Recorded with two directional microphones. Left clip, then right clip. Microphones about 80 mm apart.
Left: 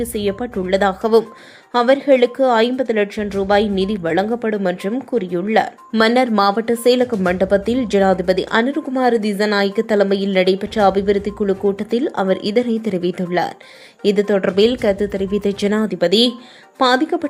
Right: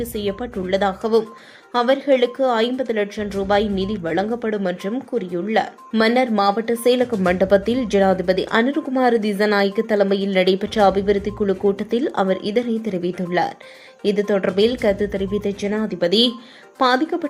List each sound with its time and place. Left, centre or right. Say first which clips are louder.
0.0 s a woman's voice: left 4 dB; left
7.1 s speech: even; centre
12.3 s speech: left 3 dB; left
15.6 s a woman's voice: left 4 dB; left